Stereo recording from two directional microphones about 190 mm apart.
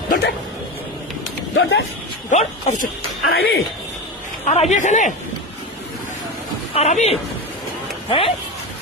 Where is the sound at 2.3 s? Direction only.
40° left (ahead or behind).